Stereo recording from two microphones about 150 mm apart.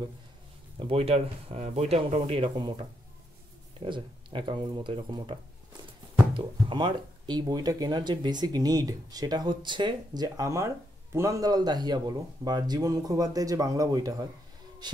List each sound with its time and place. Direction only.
0.7 s speech: 40° right (ahead or behind)
3.8 s speech: 35° right (ahead or behind)